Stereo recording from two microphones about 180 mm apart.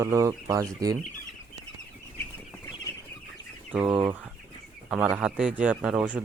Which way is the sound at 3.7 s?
10° right (ahead or behind).